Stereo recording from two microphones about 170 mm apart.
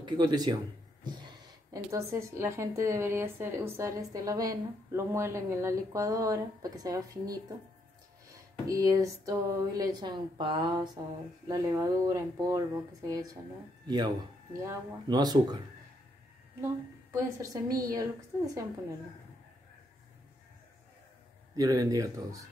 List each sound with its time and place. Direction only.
0.0 s speech: 25° right (ahead or behind)
17.1 s speech: 20° right (ahead or behind)
21.5 s speech: 20° right (ahead or behind)